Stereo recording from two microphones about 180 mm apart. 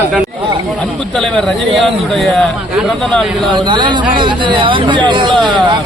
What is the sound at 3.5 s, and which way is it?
Speech, 25° right (ahead or behind).